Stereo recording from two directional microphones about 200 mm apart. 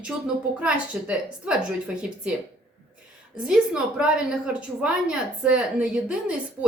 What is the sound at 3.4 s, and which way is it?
A woman's voice, 5° right (ahead or behind).